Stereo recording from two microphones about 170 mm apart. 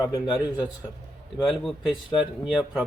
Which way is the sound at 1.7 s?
Centre (ahead or behind).